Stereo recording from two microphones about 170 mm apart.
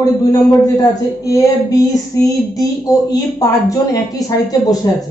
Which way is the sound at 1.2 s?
20° left (ahead or behind).